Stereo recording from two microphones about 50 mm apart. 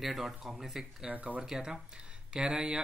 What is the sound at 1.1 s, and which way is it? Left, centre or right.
Speech, right.